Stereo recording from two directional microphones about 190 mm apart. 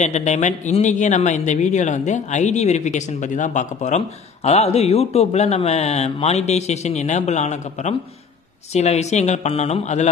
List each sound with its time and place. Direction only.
0.0 s speech: 35° left (ahead or behind)